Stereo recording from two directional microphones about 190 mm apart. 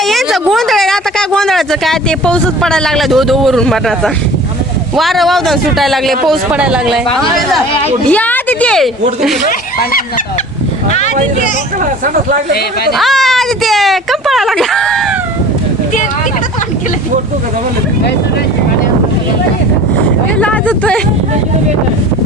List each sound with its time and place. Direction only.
0.0 s speech: centre (ahead or behind)
10.9 s speech: 40° left (ahead or behind)
12.9 s speech: centre (ahead or behind)
20.4 s speech: 5° left (ahead or behind)